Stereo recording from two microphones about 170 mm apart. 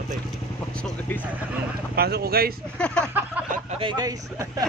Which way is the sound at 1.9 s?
65° right (ahead or behind).